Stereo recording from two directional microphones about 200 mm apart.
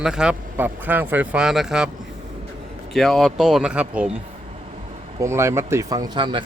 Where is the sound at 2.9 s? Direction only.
Centre (ahead or behind).